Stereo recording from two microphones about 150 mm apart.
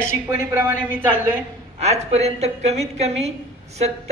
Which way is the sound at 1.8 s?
45° right (ahead or behind).